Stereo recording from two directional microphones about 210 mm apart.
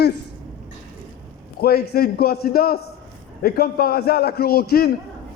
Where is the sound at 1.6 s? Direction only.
50° left (ahead or behind).